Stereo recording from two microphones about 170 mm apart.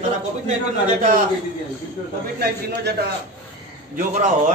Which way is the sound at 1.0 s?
55° right (ahead or behind).